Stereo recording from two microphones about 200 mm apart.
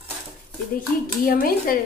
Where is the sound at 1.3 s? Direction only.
45° left (ahead or behind).